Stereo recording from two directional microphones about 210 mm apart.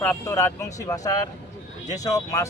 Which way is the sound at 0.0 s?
10° left (ahead or behind).